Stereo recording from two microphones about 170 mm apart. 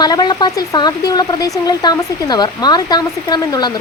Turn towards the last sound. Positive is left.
turn(degrees=25)  # may be behind; listen again after turning